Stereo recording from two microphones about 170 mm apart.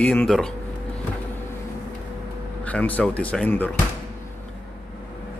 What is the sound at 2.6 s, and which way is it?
Speech, 10° left (ahead or behind).